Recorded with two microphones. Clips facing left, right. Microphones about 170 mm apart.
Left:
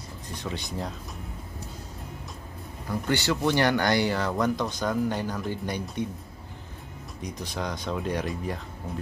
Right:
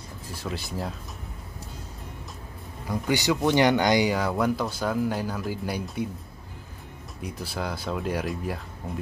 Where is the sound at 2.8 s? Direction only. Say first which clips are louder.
Right 2 dB; 10° right (ahead or behind).